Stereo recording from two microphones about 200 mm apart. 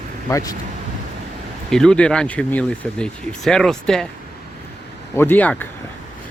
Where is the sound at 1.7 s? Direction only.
5° left (ahead or behind).